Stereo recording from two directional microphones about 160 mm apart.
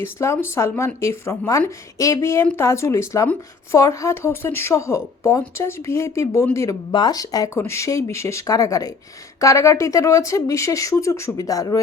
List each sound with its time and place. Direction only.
0.0 s a woman's voice: 15° left (ahead or behind)